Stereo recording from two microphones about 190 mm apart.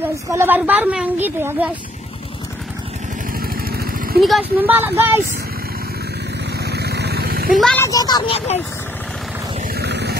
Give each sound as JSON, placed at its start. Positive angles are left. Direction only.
{"t": 0.3, "sound": "a woman's voice", "side_deg": -10}
{"t": 3.3, "sound": "vehicle", "side_deg": -50}
{"t": 4.2, "sound": "a woman's voice", "side_deg": -5}
{"t": 6.6, "sound": "vehicle", "side_deg": -60}
{"t": 7.8, "sound": "speech", "side_deg": 20}
{"t": 9.8, "sound": "a sound", "side_deg": -60}